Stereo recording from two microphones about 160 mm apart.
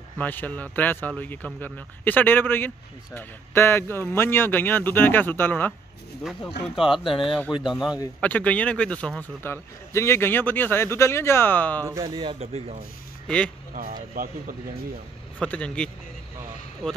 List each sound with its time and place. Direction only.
0.2 s a man's voice: 10° left (ahead or behind)
6.7 s speech: centre (ahead or behind)
8.2 s a man's voice: 10° left (ahead or behind)
11.8 s speech: 20° right (ahead or behind)
12.2 s speech: 35° right (ahead or behind)
15.3 s a man's voice: 10° left (ahead or behind)